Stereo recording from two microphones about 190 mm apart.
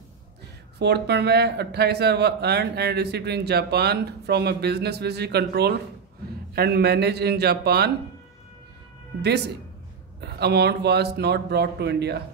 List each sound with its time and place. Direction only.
0.7 s speech: 65° right (ahead or behind)
10.2 s speech: 60° right (ahead or behind)